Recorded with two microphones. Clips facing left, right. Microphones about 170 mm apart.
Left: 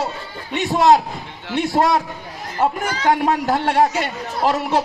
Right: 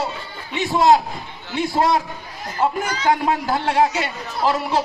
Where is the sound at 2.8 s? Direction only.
50° left (ahead or behind).